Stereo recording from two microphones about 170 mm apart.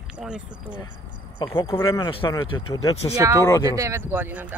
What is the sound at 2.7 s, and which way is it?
Speech, 30° left (ahead or behind).